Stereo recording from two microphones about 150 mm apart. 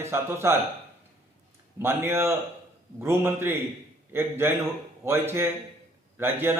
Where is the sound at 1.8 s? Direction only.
15° right (ahead or behind).